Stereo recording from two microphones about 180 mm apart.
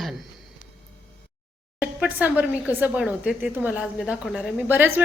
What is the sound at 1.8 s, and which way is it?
A woman's voice, 5° right (ahead or behind).